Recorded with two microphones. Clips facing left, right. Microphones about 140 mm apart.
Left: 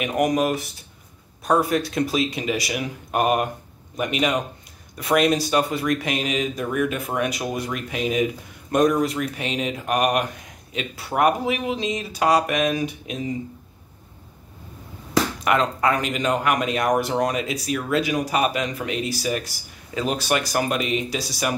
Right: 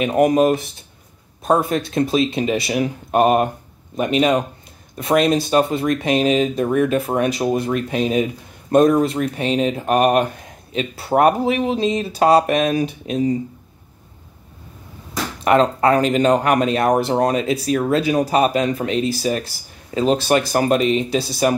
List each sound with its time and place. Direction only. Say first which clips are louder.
0.0 s speech: right 6 dB; 30° right (ahead or behind)
15.4 s speech: right 9 dB; 30° right (ahead or behind)